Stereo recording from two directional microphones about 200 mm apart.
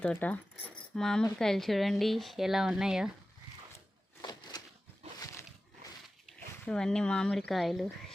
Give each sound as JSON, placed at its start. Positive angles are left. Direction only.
{"t": 0.0, "sound": "speech", "side_deg": 5}
{"t": 4.2, "sound": "a sound", "side_deg": 20}
{"t": 6.7, "sound": "speech", "side_deg": 5}